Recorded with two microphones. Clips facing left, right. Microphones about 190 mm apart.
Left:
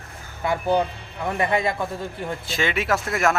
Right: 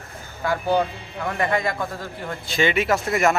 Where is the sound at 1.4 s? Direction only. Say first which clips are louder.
Left 1 dB; 20° left (ahead or behind).